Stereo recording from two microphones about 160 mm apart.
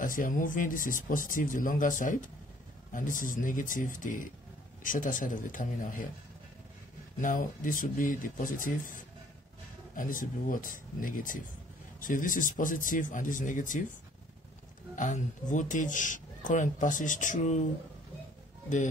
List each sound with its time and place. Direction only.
0.0 s speech: 55° left (ahead or behind)
7.2 s speech: 55° left (ahead or behind)
9.9 s speech: 55° left (ahead or behind)
15.0 s a man's voice: 50° left (ahead or behind)